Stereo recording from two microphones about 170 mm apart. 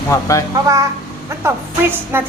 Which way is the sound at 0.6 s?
20° right (ahead or behind).